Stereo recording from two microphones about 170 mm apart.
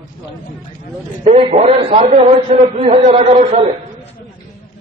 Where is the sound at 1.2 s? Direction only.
35° right (ahead or behind).